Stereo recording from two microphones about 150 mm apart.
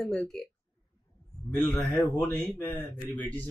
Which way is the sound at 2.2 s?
10° left (ahead or behind).